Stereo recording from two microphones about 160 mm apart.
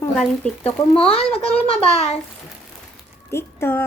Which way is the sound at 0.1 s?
5° left (ahead or behind).